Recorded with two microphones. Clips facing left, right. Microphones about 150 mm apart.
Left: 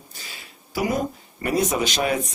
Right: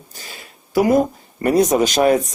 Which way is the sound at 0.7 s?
50° right (ahead or behind).